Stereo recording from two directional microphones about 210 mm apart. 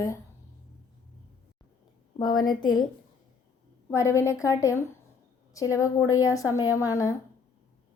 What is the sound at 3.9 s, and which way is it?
A woman's voice, 15° left (ahead or behind).